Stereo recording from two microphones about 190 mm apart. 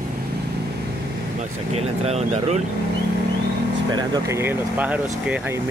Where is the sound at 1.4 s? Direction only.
35° right (ahead or behind).